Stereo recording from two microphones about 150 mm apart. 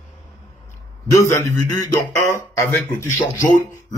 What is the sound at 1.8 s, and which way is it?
A man's voice, 20° left (ahead or behind).